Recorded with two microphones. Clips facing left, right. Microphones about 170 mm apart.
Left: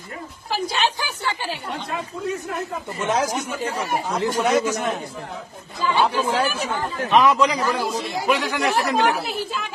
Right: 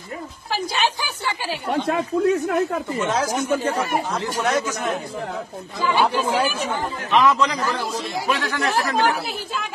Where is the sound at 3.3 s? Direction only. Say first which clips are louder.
Right 5 dB; 50° right (ahead or behind).